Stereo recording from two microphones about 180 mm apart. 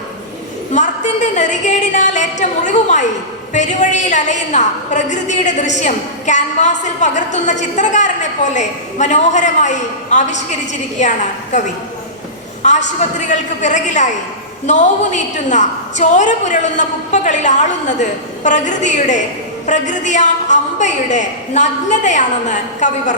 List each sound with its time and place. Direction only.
0.7 s a woman's voice: 40° left (ahead or behind)
12.6 s a woman's voice: 40° left (ahead or behind)